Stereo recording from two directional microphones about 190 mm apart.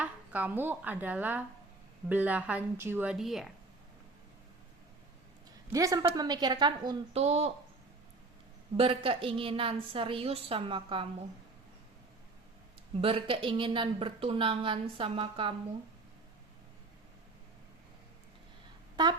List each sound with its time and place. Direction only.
0.0 s speech: 10° right (ahead or behind)
5.7 s a woman's voice: 20° right (ahead or behind)
8.7 s a woman's voice: 30° right (ahead or behind)
13.0 s a woman's voice: 30° right (ahead or behind)